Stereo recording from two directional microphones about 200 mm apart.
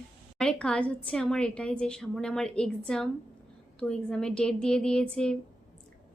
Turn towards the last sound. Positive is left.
turn(degrees=5)  # may be behind; listen again after turning